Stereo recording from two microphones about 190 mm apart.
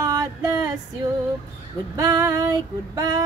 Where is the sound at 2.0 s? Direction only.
20° right (ahead or behind).